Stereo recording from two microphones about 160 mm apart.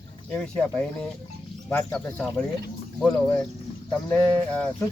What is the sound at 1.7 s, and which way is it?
Speech, 10° left (ahead or behind).